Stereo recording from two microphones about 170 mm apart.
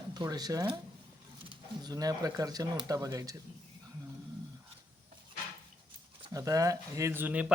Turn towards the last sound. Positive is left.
turn(degrees=-10)  # may be behind; listen again after turning